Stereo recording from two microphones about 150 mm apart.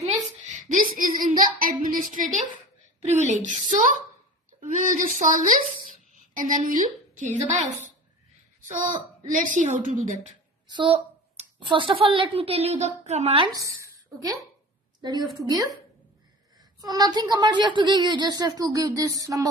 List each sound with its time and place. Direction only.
0.0 s a sound: 60° right (ahead or behind)
3.1 s a sound: 50° right (ahead or behind)
3.4 s a woman's voice: 60° right (ahead or behind)
4.6 s a sound: 60° right (ahead or behind)
6.3 s a woman's voice: 65° right (ahead or behind)
8.5 s a woman's voice: 60° right (ahead or behind)
10.7 s a woman's voice: 30° right (ahead or behind)
13.5 s a woman's voice: 20° right (ahead or behind)
16.8 s a woman's voice: 25° right (ahead or behind)